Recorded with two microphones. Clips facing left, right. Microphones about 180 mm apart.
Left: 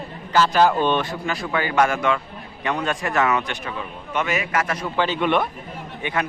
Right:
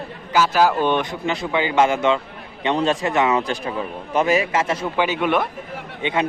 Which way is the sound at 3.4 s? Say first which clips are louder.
Right 5 dB; 35° right (ahead or behind).